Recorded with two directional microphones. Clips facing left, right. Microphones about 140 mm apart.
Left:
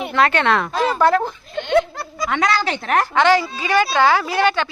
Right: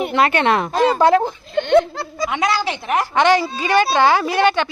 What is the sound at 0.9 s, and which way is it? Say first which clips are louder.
Speech: right 1 dB; 30° right (ahead or behind).